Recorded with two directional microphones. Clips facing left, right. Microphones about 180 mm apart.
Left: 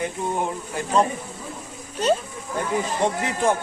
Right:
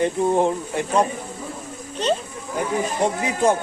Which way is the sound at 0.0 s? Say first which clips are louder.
Right 7 dB; 30° right (ahead or behind).